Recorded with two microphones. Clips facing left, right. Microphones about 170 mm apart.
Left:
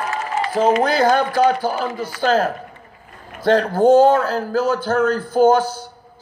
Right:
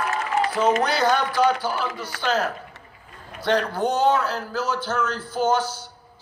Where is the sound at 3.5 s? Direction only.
45° left (ahead or behind).